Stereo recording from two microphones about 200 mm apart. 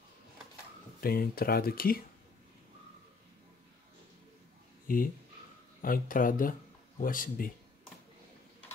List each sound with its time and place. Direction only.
1.0 s speech: 50° left (ahead or behind)
4.8 s speech: 45° left (ahead or behind)